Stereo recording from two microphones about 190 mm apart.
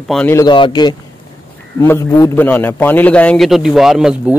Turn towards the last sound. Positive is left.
turn(degrees=-5)  # may be behind; listen again after turning